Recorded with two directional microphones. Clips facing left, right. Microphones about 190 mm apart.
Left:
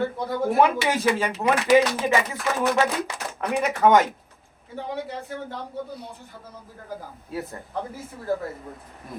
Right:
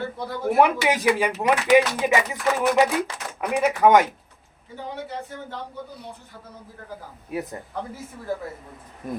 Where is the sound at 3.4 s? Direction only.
10° right (ahead or behind).